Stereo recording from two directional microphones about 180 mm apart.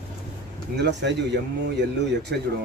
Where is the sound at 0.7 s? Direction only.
70° right (ahead or behind).